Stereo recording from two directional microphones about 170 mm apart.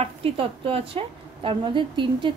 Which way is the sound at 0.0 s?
35° right (ahead or behind).